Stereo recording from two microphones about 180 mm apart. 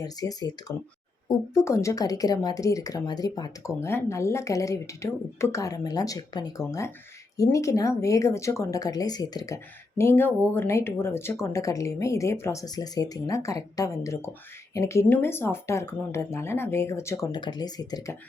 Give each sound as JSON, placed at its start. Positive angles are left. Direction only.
{"t": 0.0, "sound": "speech", "side_deg": 20}